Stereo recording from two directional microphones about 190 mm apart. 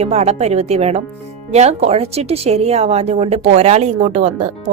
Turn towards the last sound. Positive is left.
turn(degrees=-35)  # may be behind; listen again after turning